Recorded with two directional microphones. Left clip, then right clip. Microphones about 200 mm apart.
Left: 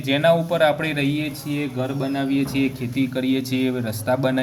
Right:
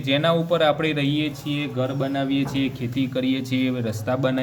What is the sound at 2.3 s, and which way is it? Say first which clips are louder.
Speech: left 2 dB; 80° right.